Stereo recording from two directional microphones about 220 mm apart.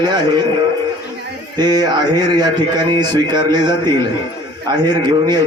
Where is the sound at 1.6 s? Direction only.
20° right (ahead or behind).